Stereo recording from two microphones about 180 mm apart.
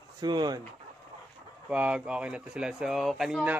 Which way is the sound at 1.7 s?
5° right (ahead or behind).